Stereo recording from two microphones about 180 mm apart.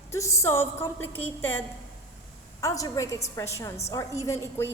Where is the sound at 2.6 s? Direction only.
15° left (ahead or behind).